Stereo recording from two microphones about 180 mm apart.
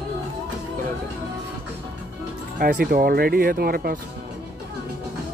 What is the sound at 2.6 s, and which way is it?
Speech, 55° right (ahead or behind).